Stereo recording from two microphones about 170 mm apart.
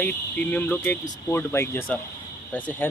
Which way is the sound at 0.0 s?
10° left (ahead or behind).